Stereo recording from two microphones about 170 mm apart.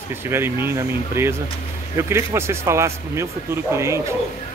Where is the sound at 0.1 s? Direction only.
15° right (ahead or behind).